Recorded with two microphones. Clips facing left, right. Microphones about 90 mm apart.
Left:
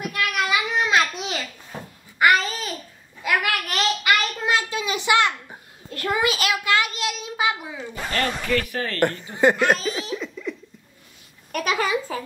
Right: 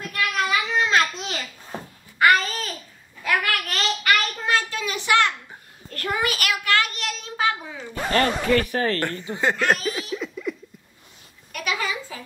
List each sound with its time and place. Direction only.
0.0 s a sound: 15° left (ahead or behind)
2.1 s babbling: 10° left (ahead or behind)
3.3 s child singing: 15° left (ahead or behind)
8.1 s speech: 35° right (ahead or behind)
9.0 s speech: 15° left (ahead or behind)
10.1 s laughter: 5° right (ahead or behind)
11.5 s a sound: 45° left (ahead or behind)